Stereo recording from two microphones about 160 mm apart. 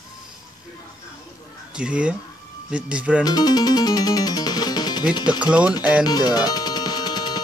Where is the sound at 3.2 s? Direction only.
25° left (ahead or behind).